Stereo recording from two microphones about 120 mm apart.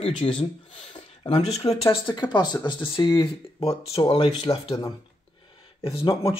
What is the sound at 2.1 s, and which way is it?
Speech, 40° left (ahead or behind).